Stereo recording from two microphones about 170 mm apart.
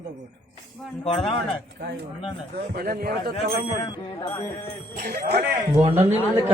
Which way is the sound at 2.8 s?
65° right (ahead or behind).